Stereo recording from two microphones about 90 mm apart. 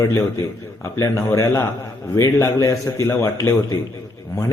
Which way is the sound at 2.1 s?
35° left (ahead or behind).